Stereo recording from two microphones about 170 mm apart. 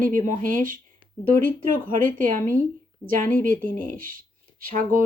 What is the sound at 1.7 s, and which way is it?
Speech, 55° right (ahead or behind).